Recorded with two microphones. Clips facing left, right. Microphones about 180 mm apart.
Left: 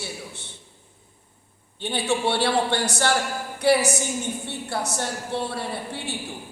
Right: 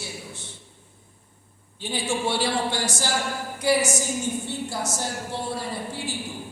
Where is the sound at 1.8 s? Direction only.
65° left (ahead or behind).